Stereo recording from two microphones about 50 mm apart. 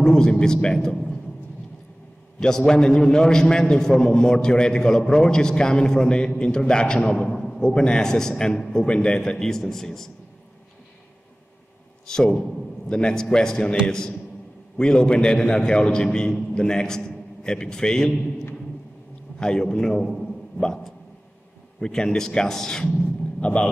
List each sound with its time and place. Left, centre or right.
0.0 s a man's voice: centre
2.4 s a man's voice: centre
12.1 s a man's voice: centre
19.4 s a man's voice: centre
23.4 s speech: left